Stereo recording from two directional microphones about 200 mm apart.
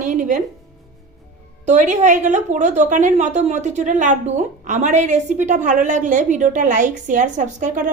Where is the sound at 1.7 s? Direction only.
35° right (ahead or behind).